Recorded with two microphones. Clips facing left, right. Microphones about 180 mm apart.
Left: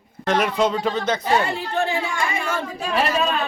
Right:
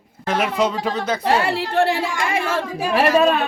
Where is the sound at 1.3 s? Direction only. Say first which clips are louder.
Right 2 dB; 85° right.